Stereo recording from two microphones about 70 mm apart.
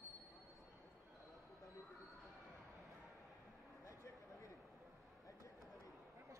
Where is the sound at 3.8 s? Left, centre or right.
Left.